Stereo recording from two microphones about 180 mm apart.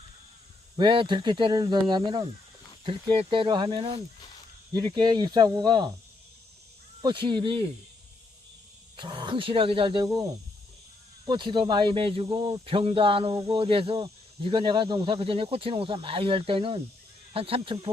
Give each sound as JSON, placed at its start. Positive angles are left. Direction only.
{"t": 0.8, "sound": "speech", "side_deg": -25}
{"t": 7.0, "sound": "speech", "side_deg": -25}
{"t": 9.0, "sound": "speech", "side_deg": -25}
{"t": 11.3, "sound": "speech", "side_deg": -25}